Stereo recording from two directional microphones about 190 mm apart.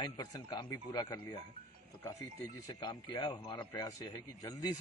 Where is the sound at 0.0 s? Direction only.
20° left (ahead or behind).